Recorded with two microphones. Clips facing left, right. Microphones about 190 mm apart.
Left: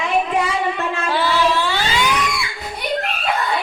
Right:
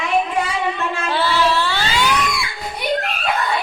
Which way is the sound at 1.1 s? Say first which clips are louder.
Even; 15° left (ahead or behind).